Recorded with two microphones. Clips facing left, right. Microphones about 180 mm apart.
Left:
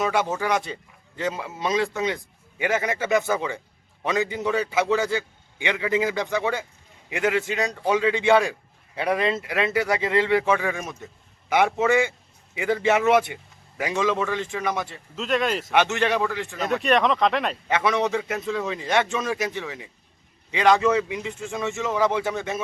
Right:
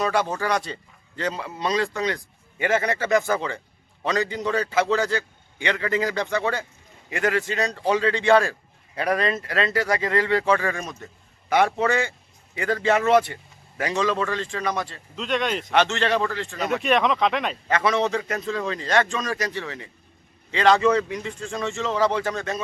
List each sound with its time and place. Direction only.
0.3 s a man's voice: 5° left (ahead or behind)
2.0 s a man's voice: 15° left (ahead or behind)
15.1 s speech: centre (ahead or behind)
15.7 s a man's voice: 15° left (ahead or behind)
16.6 s speech: centre (ahead or behind)
17.9 s a man's voice: 20° left (ahead or behind)
18.3 s a man's voice: 5° left (ahead or behind)